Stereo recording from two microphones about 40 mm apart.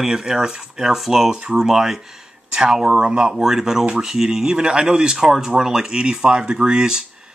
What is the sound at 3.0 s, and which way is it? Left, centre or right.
Speech, right.